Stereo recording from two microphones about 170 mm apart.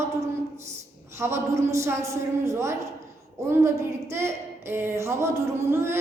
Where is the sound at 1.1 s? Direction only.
15° right (ahead or behind).